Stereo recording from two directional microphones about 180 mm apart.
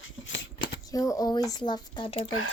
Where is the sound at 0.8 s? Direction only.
20° left (ahead or behind).